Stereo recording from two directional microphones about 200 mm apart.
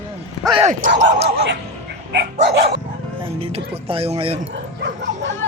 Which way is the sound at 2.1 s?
55° right (ahead or behind).